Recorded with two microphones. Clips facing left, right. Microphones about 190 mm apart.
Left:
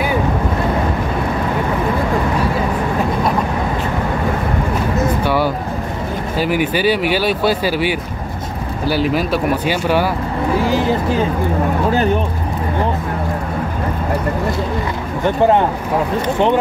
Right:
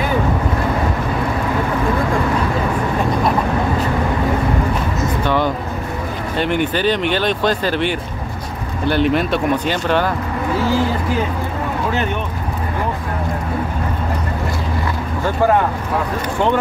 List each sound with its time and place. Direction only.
5.2 s a sound: 10° left (ahead or behind)
6.3 s speech: 5° left (ahead or behind)
11.9 s speech: 35° left (ahead or behind)
15.2 s speech: 25° left (ahead or behind)